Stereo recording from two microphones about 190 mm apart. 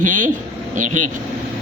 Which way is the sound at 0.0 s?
45° right (ahead or behind).